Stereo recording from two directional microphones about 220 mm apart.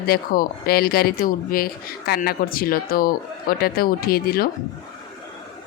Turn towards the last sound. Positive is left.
turn(degrees=45)  # may be behind; listen again after turning